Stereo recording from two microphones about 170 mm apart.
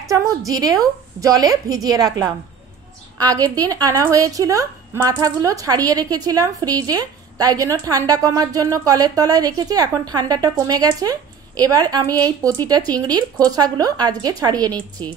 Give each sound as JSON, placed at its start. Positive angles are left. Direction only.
{"t": 0.5, "sound": "a woman's voice", "side_deg": -20}
{"t": 14.8, "sound": "a woman's voice", "side_deg": 10}